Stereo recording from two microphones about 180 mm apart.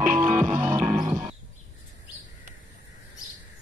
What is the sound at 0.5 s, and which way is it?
Music, 10° right (ahead or behind).